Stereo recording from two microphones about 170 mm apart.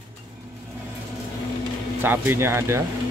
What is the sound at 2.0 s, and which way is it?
Speech, 10° right (ahead or behind).